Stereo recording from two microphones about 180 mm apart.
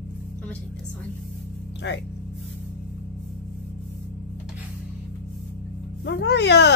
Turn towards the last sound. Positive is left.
turn(degrees=70)  # may be behind; listen again after turning